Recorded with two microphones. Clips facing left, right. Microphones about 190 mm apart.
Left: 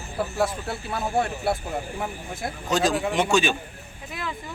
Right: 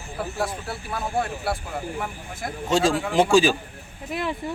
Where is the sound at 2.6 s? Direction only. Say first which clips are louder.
Right 2 dB; 25° right (ahead or behind).